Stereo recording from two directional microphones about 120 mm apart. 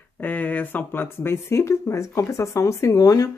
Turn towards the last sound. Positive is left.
turn(degrees=30)  # may be behind; listen again after turning